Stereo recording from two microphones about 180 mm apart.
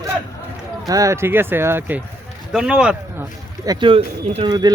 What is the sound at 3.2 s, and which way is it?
Speech, 20° right (ahead or behind).